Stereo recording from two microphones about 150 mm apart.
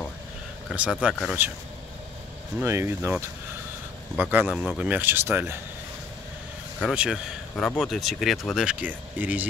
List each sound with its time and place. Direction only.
1.0 s speech: 10° right (ahead or behind)
2.6 s speech: 15° right (ahead or behind)
6.8 s speech: 5° right (ahead or behind)